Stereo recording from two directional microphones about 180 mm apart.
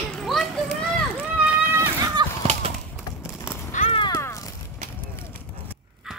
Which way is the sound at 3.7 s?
35° left (ahead or behind).